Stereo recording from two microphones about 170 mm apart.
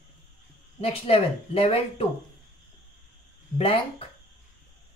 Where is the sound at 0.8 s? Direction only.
35° left (ahead or behind).